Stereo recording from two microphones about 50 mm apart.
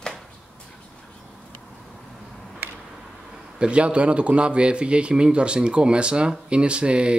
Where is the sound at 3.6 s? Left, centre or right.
Right.